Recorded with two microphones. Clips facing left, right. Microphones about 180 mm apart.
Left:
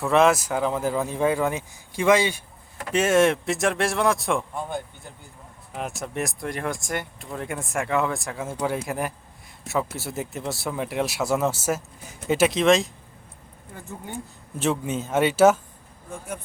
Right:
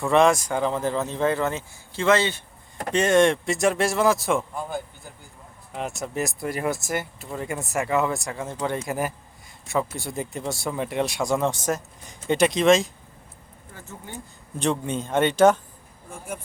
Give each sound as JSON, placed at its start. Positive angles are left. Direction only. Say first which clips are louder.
{"t": 0.0, "sound": "speech", "louder": "even", "side_deg": 5}
{"t": 14.6, "sound": "speech", "louder": "even", "side_deg": 5}